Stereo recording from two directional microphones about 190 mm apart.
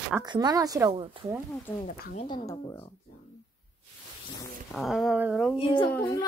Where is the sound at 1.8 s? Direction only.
45° left (ahead or behind).